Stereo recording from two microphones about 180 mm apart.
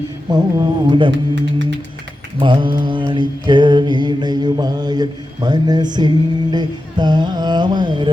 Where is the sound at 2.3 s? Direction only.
25° right (ahead or behind).